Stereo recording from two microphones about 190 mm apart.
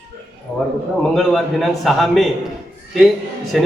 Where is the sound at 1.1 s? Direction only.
Centre (ahead or behind).